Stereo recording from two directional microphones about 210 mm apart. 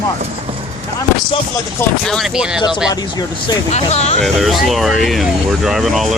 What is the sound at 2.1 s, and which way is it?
Speech, centre (ahead or behind).